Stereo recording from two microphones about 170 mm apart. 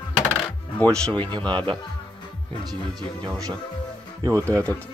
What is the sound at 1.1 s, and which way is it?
Speech, 25° right (ahead or behind).